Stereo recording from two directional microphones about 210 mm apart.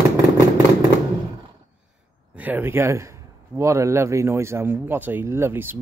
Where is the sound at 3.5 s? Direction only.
15° right (ahead or behind).